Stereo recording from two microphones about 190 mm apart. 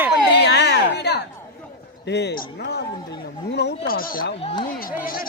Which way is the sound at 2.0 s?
65° left (ahead or behind).